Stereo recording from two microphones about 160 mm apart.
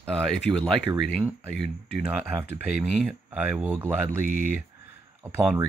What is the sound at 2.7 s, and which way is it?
Speech, centre (ahead or behind).